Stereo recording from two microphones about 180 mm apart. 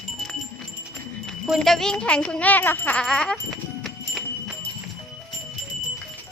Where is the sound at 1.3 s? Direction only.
Centre (ahead or behind).